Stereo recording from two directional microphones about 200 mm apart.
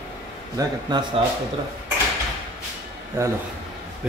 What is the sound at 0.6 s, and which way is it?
Speech, 20° right (ahead or behind).